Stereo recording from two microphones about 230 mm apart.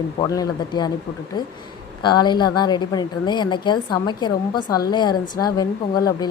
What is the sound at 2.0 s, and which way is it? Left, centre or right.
A woman's voice, centre.